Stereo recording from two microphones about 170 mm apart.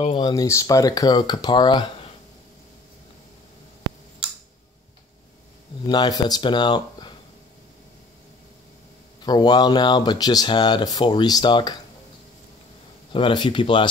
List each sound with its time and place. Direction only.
0.0 s speech: 30° left (ahead or behind)
0.3 s speech: 20° left (ahead or behind)
5.9 s speech: 25° left (ahead or behind)
9.2 s speech: 25° left (ahead or behind)
13.1 s speech: 30° left (ahead or behind)